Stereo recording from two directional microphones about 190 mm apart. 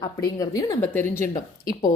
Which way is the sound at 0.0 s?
20° left (ahead or behind).